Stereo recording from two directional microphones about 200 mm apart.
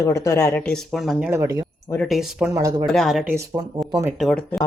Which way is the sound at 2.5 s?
15° right (ahead or behind).